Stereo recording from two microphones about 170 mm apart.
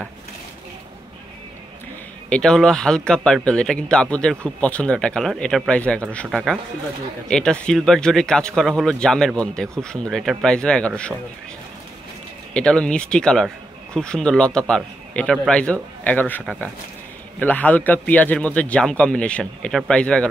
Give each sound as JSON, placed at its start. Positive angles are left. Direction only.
{"t": 2.2, "sound": "speech", "side_deg": 5}
{"t": 12.5, "sound": "a man's voice", "side_deg": 5}